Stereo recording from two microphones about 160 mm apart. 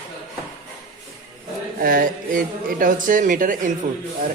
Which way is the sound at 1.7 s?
60° right (ahead or behind).